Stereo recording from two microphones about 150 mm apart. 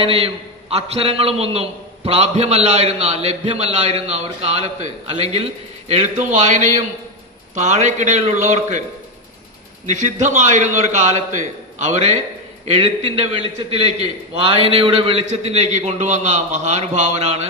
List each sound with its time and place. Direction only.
0.0 s a man's voice: 40° right (ahead or behind)
9.8 s a man's voice: 55° right (ahead or behind)